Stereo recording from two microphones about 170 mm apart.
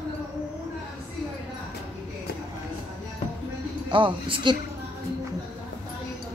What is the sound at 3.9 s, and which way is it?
Speech, 30° right (ahead or behind).